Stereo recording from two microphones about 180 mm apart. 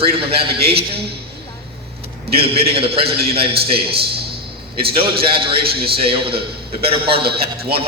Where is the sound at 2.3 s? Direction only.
30° right (ahead or behind).